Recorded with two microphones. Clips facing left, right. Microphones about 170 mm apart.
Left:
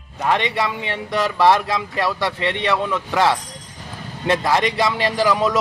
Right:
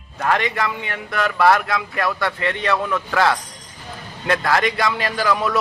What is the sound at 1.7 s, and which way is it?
A man's voice, 30° left (ahead or behind).